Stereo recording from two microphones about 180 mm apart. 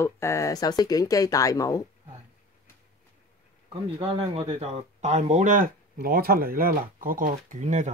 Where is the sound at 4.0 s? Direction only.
30° right (ahead or behind).